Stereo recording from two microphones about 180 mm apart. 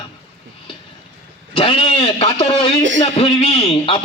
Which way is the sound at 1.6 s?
30° left (ahead or behind).